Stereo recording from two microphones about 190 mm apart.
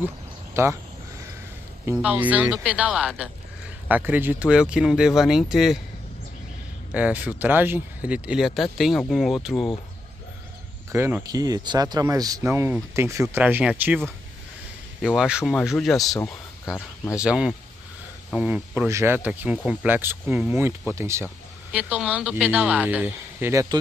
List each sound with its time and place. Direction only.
0.6 s speech: 15° right (ahead or behind)
2.0 s speech: 10° right (ahead or behind)
6.9 s speech: 10° right (ahead or behind)
10.9 s speech: 10° right (ahead or behind)